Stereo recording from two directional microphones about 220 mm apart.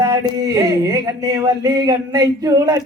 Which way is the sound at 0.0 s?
15° right (ahead or behind).